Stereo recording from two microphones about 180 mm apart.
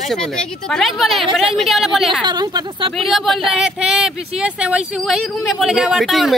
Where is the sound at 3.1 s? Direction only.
Centre (ahead or behind).